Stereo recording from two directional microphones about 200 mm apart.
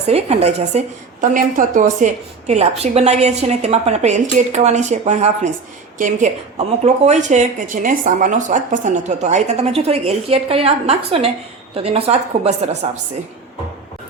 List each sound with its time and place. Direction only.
0.0 s speech: 30° right (ahead or behind)